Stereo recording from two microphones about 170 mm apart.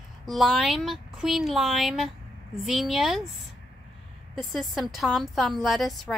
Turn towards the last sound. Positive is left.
turn(degrees=0)  # may be behind; listen again after turning